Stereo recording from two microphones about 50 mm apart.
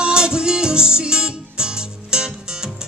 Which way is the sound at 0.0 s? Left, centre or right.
Centre.